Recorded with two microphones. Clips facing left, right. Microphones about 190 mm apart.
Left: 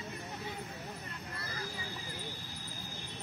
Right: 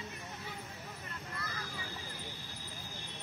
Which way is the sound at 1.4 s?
35° left (ahead or behind).